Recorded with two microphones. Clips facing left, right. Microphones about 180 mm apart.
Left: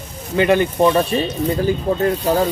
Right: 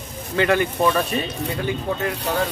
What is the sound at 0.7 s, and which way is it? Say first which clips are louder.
Speech: left 5 dB; 30° left (ahead or behind).